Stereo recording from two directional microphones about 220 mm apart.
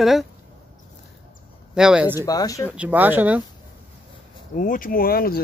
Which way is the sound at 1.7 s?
5° right (ahead or behind).